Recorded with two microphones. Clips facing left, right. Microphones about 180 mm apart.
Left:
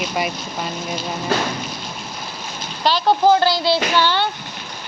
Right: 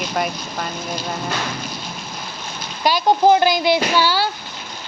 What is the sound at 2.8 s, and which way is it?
Speech, 15° right (ahead or behind).